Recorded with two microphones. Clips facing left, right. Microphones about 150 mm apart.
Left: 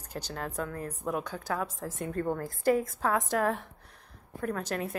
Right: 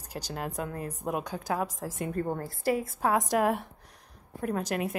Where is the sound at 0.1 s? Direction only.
10° right (ahead or behind).